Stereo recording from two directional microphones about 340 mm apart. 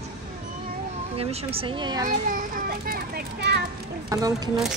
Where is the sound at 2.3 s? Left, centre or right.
Right.